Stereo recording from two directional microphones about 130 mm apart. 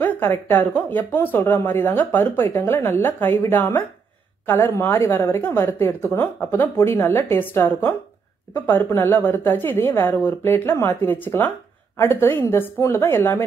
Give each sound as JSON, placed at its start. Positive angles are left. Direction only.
{"t": 0.0, "sound": "speech", "side_deg": 15}